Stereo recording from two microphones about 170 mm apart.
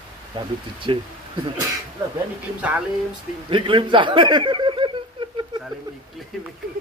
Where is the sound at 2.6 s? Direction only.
5° right (ahead or behind).